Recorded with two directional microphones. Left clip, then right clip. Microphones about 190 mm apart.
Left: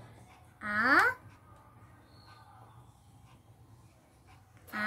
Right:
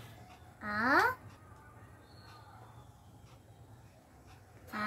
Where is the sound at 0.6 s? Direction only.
15° left (ahead or behind).